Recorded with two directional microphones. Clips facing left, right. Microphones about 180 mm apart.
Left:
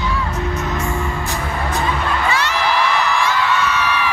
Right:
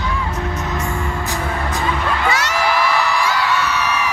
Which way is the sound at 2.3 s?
40° right (ahead or behind).